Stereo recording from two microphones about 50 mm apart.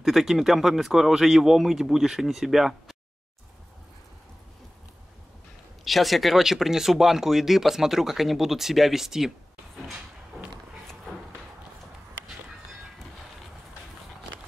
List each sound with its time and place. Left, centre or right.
0.0 s speech: centre
5.9 s speech: centre